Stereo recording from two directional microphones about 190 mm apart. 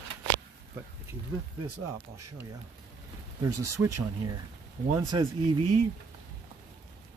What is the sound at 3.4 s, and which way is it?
Speech, 15° right (ahead or behind).